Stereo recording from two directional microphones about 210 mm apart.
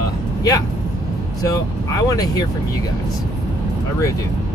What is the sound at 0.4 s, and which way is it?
Speech, 15° left (ahead or behind).